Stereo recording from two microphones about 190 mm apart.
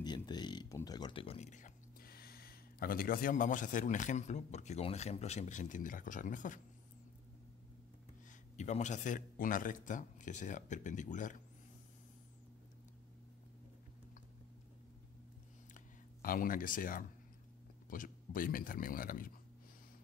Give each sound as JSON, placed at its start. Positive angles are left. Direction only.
{"t": 0.0, "sound": "speech", "side_deg": 20}
{"t": 8.5, "sound": "speech", "side_deg": 40}
{"t": 15.7, "sound": "a sound", "side_deg": 50}
{"t": 17.8, "sound": "speech", "side_deg": 45}